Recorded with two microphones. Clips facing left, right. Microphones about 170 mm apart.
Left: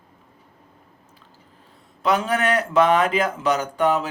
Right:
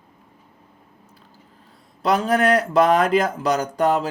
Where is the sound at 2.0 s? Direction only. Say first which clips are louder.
Right 2 dB; 35° right (ahead or behind).